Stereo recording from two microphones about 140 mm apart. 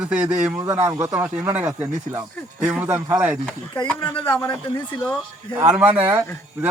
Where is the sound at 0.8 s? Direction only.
20° right (ahead or behind).